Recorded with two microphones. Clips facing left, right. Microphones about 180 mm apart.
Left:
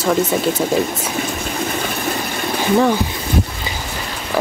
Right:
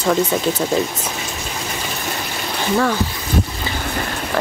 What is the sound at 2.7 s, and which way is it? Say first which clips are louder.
Speech: left 4 dB; 15° left (ahead or behind).